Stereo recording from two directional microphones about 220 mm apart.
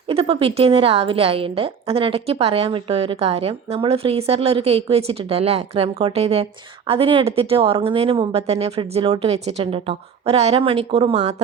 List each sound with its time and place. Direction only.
0.1 s a woman's voice: 25° right (ahead or behind)